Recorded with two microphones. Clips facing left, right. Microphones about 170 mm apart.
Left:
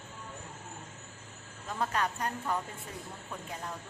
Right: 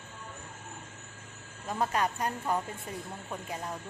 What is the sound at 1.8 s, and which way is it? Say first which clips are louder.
Speech: right 2 dB; 10° right (ahead or behind).